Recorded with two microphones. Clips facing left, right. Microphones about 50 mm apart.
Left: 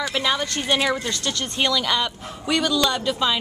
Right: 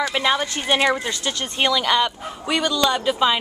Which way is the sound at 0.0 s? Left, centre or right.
Centre.